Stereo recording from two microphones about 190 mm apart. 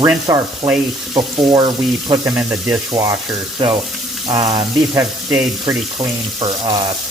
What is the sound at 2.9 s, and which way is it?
Speech, 20° right (ahead or behind).